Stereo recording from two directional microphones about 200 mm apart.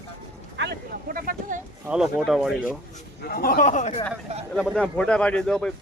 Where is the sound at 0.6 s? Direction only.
50° right (ahead or behind).